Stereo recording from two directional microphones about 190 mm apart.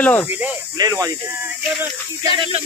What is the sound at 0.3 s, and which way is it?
Speech, 10° right (ahead or behind).